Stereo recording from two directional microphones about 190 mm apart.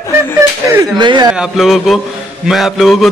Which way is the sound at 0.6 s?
20° right (ahead or behind).